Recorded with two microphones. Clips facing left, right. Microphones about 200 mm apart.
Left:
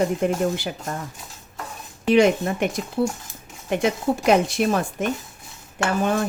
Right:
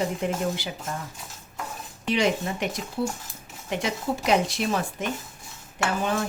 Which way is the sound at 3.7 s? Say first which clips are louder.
Left 6 dB; 55° left (ahead or behind).